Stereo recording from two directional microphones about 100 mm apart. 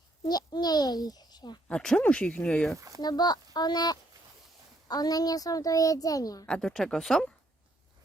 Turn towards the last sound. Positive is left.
turn(degrees=5)  # may be behind; listen again after turning